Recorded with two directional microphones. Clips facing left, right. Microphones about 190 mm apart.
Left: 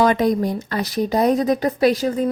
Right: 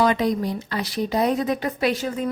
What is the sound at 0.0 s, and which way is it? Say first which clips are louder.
A woman's voice: left 3 dB; 50° left (ahead or behind).